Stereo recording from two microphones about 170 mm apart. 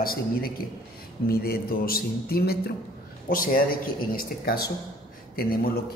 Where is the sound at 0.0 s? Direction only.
60° left (ahead or behind).